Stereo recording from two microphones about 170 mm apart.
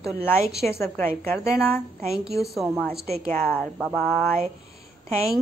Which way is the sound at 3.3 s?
10° left (ahead or behind).